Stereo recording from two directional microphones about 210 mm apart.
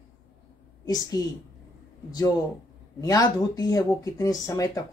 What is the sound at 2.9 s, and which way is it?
Speech, 15° left (ahead or behind).